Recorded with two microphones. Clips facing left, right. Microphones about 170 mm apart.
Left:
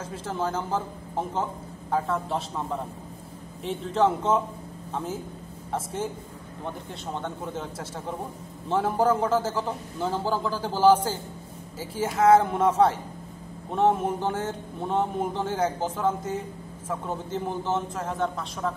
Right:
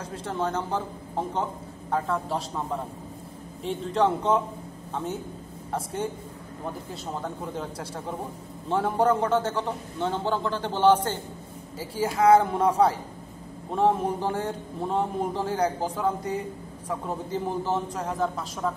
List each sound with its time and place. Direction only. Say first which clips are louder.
0.0 s speech: even; centre (ahead or behind)
3.6 s speech: even; centre (ahead or behind)
5.7 s speech: even; centre (ahead or behind)
7.2 s speech: even; centre (ahead or behind)